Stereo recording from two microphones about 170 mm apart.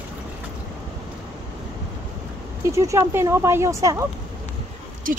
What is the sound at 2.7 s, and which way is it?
Speech, 15° right (ahead or behind).